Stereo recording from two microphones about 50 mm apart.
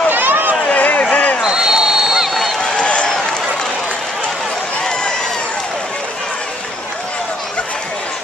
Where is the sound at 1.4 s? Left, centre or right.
Centre.